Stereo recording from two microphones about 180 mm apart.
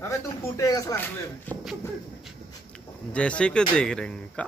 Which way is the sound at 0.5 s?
20° left (ahead or behind).